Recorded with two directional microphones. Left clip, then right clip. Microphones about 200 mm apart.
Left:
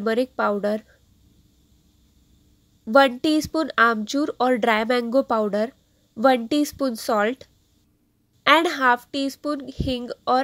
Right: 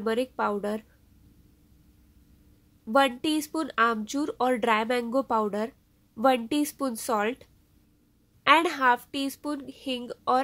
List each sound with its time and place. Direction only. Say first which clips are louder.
0.0 s speech: left 5 dB; 20° left (ahead or behind)
2.8 s speech: left 7 dB; 20° left (ahead or behind)
8.5 s speech: left 4 dB; 20° left (ahead or behind)